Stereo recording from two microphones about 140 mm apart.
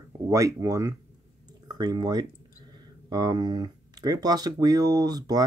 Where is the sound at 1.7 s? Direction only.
30° right (ahead or behind).